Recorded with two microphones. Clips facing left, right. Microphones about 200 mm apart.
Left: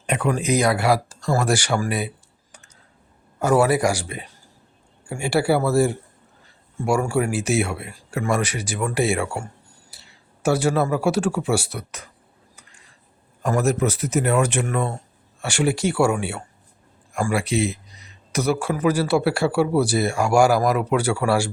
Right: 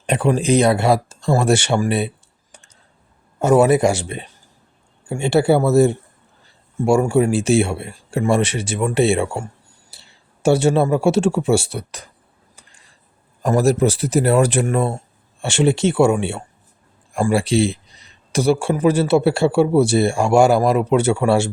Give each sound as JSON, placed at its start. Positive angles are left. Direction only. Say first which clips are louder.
{"t": 0.0, "sound": "speech", "louder": "right 5 dB", "side_deg": -30}
{"t": 13.4, "sound": "a man's voice", "louder": "right 5 dB", "side_deg": -35}